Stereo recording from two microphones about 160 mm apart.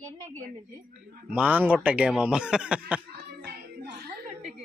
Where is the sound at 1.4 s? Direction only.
10° right (ahead or behind).